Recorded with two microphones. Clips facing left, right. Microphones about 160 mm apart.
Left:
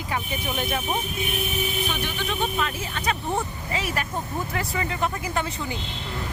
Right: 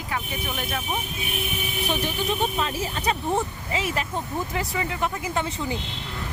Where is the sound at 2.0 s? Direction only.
30° right (ahead or behind).